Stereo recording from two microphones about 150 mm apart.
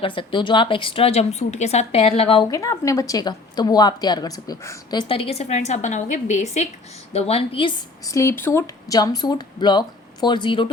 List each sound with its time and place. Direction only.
0.0 s speech: 35° left (ahead or behind)
2.5 s a woman's voice: 20° left (ahead or behind); by 7.7 s 40° left (ahead or behind)
8.0 s a woman's voice: 20° left (ahead or behind)